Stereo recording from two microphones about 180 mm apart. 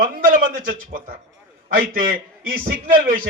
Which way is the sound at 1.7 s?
50° right (ahead or behind).